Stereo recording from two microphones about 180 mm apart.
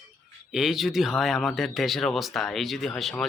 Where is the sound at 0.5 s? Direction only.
Centre (ahead or behind).